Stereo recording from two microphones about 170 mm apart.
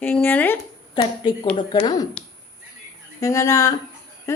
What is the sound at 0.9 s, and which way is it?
Speech, 25° left (ahead or behind).